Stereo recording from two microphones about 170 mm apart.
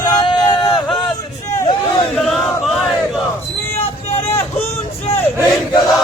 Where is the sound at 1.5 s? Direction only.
25° left (ahead or behind).